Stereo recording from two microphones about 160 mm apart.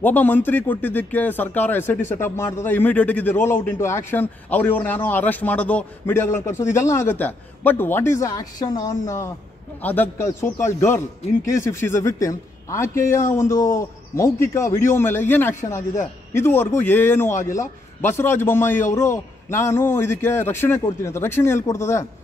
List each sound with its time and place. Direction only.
0.0 s a man's voice: 10° left (ahead or behind)